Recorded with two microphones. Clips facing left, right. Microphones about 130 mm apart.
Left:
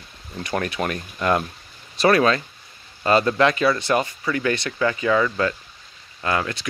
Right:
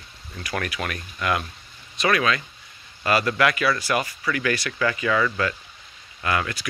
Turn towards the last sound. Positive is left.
turn(degrees=30)  # may be behind; listen again after turning